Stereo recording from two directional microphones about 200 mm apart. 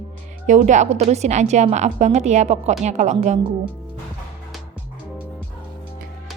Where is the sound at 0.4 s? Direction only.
35° right (ahead or behind).